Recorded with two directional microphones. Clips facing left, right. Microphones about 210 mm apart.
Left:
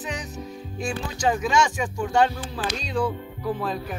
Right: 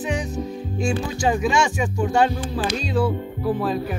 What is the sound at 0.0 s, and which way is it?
Music, 10° right (ahead or behind).